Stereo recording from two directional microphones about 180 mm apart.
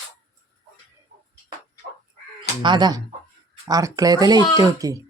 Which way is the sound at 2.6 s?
25° right (ahead or behind).